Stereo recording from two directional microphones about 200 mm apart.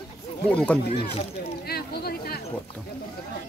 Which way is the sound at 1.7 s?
50° left (ahead or behind).